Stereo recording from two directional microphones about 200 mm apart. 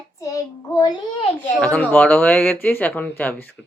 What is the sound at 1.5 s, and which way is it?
A child's voice, 5° left (ahead or behind).